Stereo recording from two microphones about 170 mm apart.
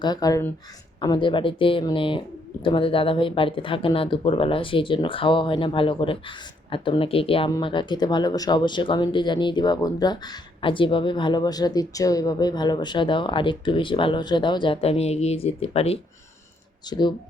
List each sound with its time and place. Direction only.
0.0 s speech: 25° left (ahead or behind)
16.8 s speech: 25° left (ahead or behind)